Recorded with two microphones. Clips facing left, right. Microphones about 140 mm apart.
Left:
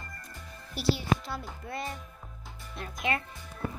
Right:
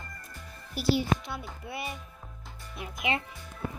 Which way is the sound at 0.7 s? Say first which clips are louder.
Right 2 dB; 5° right (ahead or behind).